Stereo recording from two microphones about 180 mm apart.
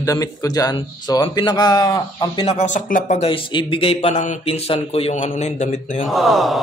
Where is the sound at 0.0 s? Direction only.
20° left (ahead or behind); by 3.3 s 45° left (ahead or behind).